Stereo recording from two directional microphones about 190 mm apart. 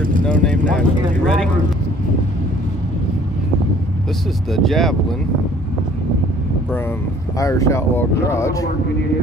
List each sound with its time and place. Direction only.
0.3 s speech: 5° left (ahead or behind)
4.5 s speech: centre (ahead or behind)
7.3 s speech: 15° left (ahead or behind)